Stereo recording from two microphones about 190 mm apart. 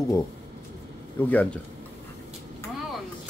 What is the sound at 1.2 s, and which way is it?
Speech, 10° left (ahead or behind).